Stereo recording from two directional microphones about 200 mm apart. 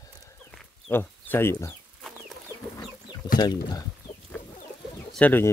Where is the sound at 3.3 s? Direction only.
20° left (ahead or behind).